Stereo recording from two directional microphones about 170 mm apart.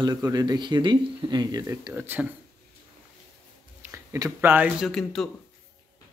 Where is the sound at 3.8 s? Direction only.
20° right (ahead or behind).